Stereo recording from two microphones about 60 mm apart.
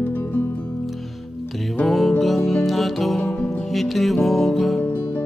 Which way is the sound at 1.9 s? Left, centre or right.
Centre.